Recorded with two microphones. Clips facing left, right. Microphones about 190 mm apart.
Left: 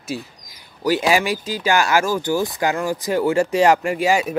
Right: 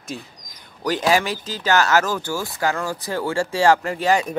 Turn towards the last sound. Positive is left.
turn(degrees=10)  # may be behind; listen again after turning